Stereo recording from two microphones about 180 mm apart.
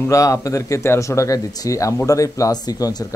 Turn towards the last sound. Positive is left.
turn(degrees=20)  # may be behind; listen again after turning